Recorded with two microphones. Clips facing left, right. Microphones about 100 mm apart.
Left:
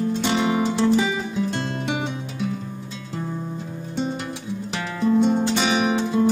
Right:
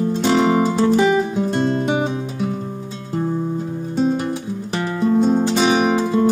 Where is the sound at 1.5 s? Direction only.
35° right (ahead or behind).